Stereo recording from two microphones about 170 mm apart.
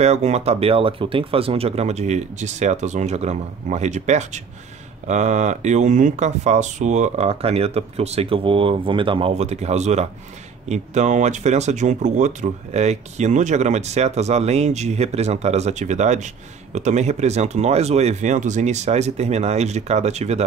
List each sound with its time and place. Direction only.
0.0 s speech: 40° right (ahead or behind)